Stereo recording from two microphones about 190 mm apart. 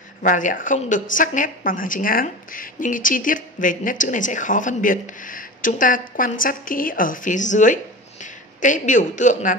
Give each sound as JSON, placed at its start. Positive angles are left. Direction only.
{"t": 0.2, "sound": "a woman's voice", "side_deg": 45}